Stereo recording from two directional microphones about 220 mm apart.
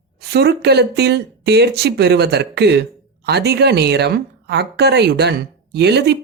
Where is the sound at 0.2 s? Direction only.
50° right (ahead or behind).